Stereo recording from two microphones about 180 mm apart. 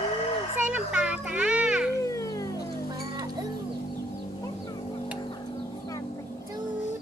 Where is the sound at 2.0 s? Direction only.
20° left (ahead or behind).